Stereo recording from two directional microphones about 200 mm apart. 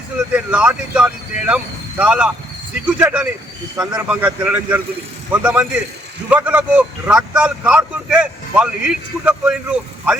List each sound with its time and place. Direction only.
0.3 s speech: 5° right (ahead or behind)